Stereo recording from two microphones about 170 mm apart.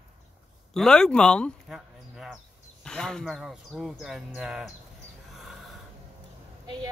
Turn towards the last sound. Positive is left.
turn(degrees=-25)  # may be behind; listen again after turning